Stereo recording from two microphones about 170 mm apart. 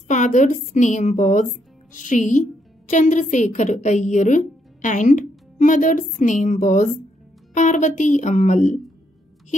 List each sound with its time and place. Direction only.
0.1 s a woman's voice: 45° left (ahead or behind)